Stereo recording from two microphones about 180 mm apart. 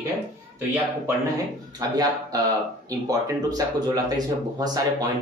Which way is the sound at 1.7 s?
20° right (ahead or behind).